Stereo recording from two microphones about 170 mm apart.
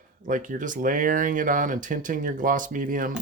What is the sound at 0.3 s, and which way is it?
Speech, 50° right (ahead or behind).